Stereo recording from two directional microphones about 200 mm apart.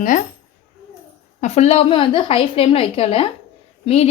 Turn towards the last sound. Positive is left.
turn(degrees=30)  # may be behind; listen again after turning